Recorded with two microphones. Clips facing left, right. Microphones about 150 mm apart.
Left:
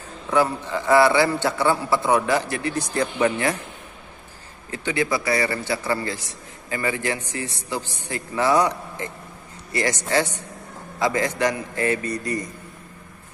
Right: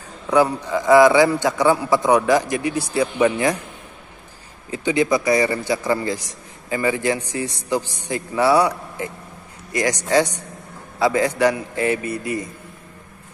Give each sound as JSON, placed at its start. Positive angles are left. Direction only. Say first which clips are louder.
{"t": 0.3, "sound": "a man's voice", "louder": "right 4 dB", "side_deg": -15}
{"t": 4.6, "sound": "a man's voice", "louder": "right 5 dB", "side_deg": -15}